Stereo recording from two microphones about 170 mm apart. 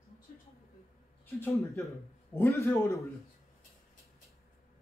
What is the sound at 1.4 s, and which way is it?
A man's voice, 15° left (ahead or behind).